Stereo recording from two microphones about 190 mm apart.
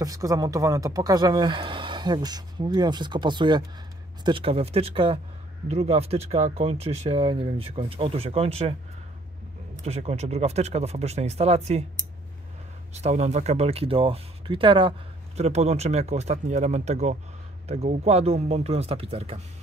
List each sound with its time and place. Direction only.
0.0 s speech: 20° right (ahead or behind)
9.8 s speech: 35° right (ahead or behind)
12.9 s speech: 35° right (ahead or behind)